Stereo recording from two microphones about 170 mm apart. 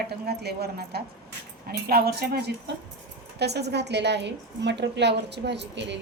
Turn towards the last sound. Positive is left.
turn(degrees=-90)